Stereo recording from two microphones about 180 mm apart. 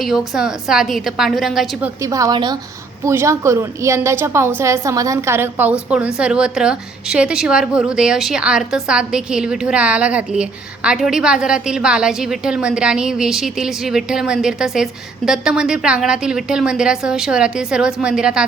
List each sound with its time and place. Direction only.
0.0 s a woman's voice: 5° right (ahead or behind)
2.0 s a woman's voice: 20° right (ahead or behind)